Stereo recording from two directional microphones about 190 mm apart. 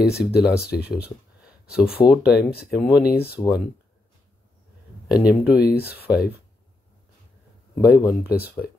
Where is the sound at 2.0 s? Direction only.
20° left (ahead or behind).